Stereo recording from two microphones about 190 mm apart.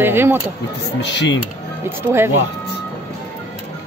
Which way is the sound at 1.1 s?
70° left (ahead or behind).